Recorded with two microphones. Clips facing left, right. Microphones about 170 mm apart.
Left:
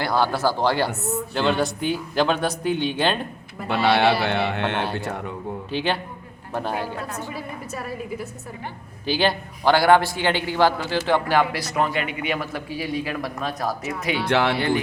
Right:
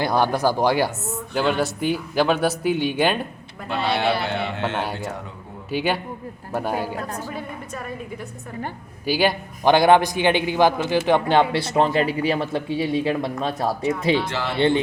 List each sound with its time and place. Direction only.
0.0 s speech: 20° right (ahead or behind)
1.3 s speech: 5° right (ahead or behind)
3.7 s speech: 65° left (ahead or behind)
5.7 s speech: 10° right (ahead or behind)
7.3 s speech: 5° left (ahead or behind)
9.0 s a man's voice: 10° right (ahead or behind); by 14.2 s 30° right (ahead or behind)
14.3 s speech: 65° left (ahead or behind)